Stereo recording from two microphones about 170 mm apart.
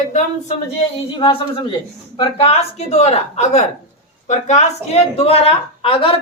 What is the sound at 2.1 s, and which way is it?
Speech, 30° left (ahead or behind).